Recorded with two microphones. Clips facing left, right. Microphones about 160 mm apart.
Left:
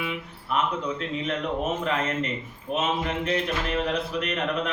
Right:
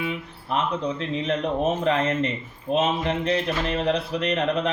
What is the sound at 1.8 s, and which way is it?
Speech, 35° right (ahead or behind).